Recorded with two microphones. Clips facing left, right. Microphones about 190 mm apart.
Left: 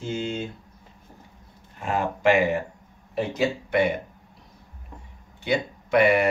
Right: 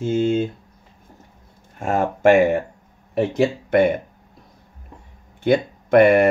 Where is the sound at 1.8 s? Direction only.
45° right (ahead or behind).